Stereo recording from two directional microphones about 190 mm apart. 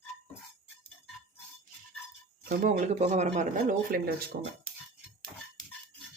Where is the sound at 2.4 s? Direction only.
45° right (ahead or behind).